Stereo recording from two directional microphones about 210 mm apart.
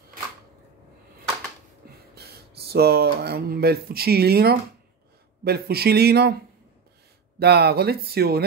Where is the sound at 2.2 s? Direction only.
50° right (ahead or behind).